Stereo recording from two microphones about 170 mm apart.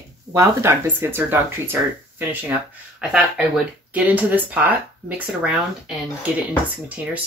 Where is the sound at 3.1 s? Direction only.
5° right (ahead or behind).